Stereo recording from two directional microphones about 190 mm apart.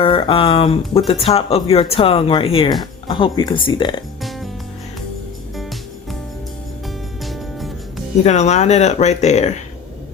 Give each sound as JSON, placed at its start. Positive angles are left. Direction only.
{"t": 0.0, "sound": "speech", "side_deg": 30}
{"t": 4.2, "sound": "music", "side_deg": 0}
{"t": 7.3, "sound": "music", "side_deg": 0}
{"t": 8.2, "sound": "speech", "side_deg": 35}